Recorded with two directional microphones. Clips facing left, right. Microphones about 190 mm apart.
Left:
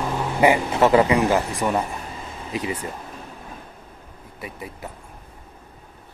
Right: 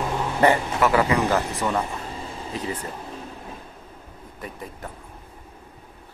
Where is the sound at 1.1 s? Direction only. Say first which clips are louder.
Left 2 dB; 15° left (ahead or behind).